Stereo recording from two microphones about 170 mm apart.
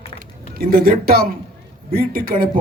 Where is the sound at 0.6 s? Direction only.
60° right (ahead or behind).